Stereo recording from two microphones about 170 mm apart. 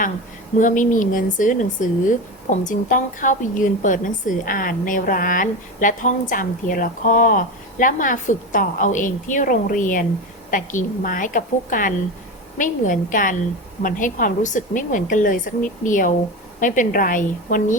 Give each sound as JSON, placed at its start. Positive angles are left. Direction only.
{"t": 0.6, "sound": "a woman's voice", "side_deg": 50}